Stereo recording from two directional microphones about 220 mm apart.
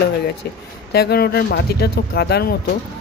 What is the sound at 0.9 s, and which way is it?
Speech, 50° left (ahead or behind).